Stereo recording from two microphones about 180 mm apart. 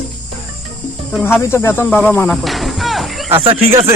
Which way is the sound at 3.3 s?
30° right (ahead or behind).